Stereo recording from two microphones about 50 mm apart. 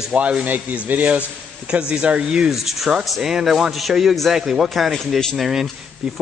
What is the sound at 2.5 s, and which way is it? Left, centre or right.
A man's voice, centre.